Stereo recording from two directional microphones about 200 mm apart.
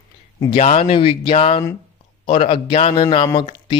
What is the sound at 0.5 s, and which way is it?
A man's voice, 30° left (ahead or behind).